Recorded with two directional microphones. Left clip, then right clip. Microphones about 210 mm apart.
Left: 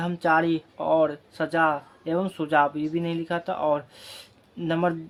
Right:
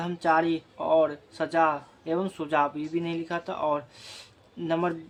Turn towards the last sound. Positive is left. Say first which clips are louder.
# left 2 dB
turn(degrees=30)  # may be behind; listen again after turning